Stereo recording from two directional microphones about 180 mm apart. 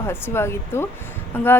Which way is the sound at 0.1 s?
15° left (ahead or behind).